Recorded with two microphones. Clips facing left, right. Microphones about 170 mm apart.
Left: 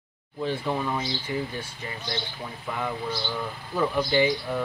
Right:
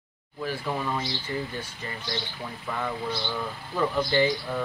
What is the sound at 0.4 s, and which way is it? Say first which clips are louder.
Speech: left 3 dB; 20° left (ahead or behind).